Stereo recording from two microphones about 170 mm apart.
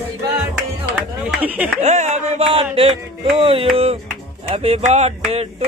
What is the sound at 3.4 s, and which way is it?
A man's voice, 35° right (ahead or behind).